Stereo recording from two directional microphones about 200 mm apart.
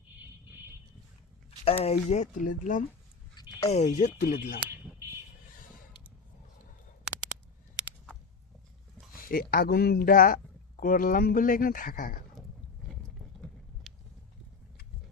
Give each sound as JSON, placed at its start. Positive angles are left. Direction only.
{"t": 1.5, "sound": "speech", "side_deg": 30}
{"t": 3.3, "sound": "a sound", "side_deg": 20}
{"t": 3.7, "sound": "speech", "side_deg": 35}
{"t": 9.1, "sound": "speech", "side_deg": 45}
{"t": 12.9, "sound": "vehicle", "side_deg": 5}